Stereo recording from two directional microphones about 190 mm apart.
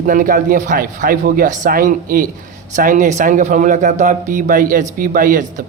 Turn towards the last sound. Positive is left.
turn(degrees=-45)  # may be behind; listen again after turning